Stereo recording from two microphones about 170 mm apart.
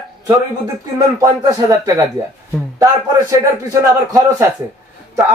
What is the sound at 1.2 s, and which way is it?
A man's voice, 20° right (ahead or behind).